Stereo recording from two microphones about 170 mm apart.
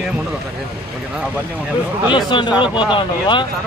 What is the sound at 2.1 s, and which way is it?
Speech, 25° left (ahead or behind).